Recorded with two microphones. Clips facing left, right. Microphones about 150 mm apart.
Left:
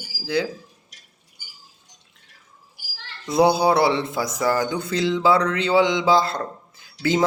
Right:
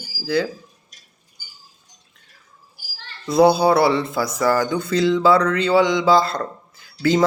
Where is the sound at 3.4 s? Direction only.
20° left (ahead or behind).